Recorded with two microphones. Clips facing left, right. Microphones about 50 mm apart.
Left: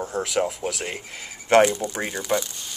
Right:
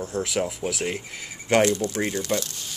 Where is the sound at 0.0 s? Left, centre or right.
Centre.